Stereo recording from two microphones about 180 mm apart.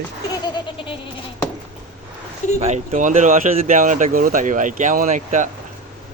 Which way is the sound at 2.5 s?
40° right (ahead or behind).